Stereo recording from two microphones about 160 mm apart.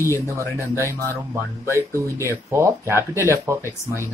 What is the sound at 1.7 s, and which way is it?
Speech, 20° right (ahead or behind).